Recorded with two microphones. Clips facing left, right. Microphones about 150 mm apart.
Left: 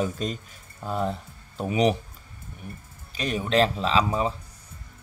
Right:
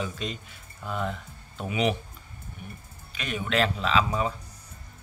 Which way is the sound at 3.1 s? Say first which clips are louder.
Left 4 dB; 35° left (ahead or behind).